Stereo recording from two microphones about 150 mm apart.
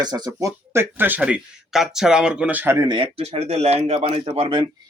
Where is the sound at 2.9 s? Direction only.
30° right (ahead or behind).